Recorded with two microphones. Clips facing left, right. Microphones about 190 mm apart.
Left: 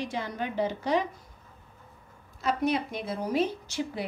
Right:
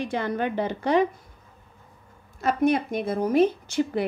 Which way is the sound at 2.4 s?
50° right (ahead or behind).